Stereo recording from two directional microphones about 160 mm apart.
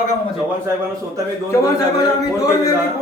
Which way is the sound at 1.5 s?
20° left (ahead or behind).